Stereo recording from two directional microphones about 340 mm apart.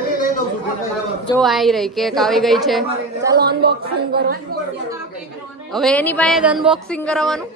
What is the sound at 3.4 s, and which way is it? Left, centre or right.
Speech, right.